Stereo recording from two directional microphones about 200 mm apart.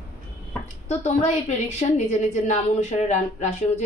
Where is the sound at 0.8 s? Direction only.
35° left (ahead or behind).